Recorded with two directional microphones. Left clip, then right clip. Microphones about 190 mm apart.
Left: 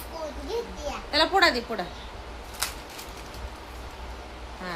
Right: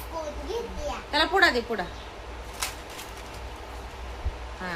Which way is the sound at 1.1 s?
Centre (ahead or behind).